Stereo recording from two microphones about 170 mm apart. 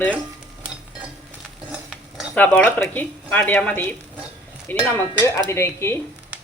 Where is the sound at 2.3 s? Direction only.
10° left (ahead or behind).